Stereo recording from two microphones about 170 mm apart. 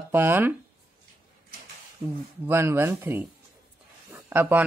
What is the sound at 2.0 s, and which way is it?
A woman's voice, 20° right (ahead or behind).